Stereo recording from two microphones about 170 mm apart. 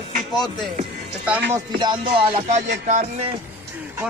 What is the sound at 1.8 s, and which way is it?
Music, 25° right (ahead or behind).